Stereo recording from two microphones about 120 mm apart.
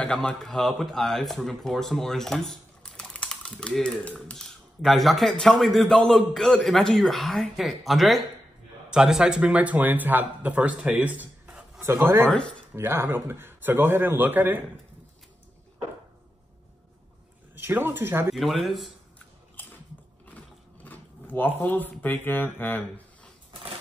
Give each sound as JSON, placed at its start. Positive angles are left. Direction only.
{"t": 0.0, "sound": "speech", "side_deg": 10}
{"t": 11.8, "sound": "a man's voice", "side_deg": -20}
{"t": 17.6, "sound": "a man's voice", "side_deg": -20}
{"t": 18.3, "sound": "speech", "side_deg": 0}
{"t": 20.2, "sound": "a sound", "side_deg": 15}